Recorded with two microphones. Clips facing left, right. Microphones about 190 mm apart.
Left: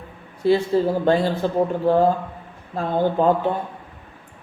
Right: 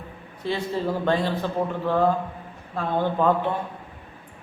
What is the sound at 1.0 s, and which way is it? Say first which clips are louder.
Speech: left 5 dB; 40° left (ahead or behind).